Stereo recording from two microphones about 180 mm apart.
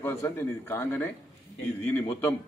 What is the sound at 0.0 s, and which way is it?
A man's voice, 15° left (ahead or behind).